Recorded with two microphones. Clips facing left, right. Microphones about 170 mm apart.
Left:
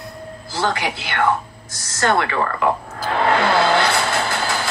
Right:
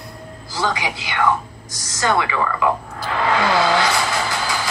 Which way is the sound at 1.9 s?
50° left (ahead or behind).